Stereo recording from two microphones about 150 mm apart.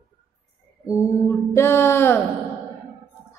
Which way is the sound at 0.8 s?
20° left (ahead or behind).